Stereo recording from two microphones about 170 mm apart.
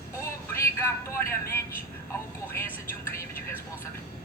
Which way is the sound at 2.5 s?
15° left (ahead or behind).